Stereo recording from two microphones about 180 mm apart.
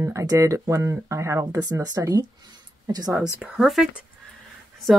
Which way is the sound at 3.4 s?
5° right (ahead or behind).